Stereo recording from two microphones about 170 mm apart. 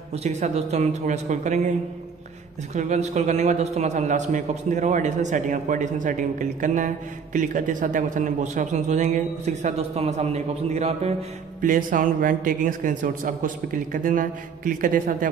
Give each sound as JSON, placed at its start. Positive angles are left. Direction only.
{"t": 0.1, "sound": "a man's voice", "side_deg": -40}
{"t": 2.7, "sound": "a man's voice", "side_deg": -45}
{"t": 11.6, "sound": "a man's voice", "side_deg": -55}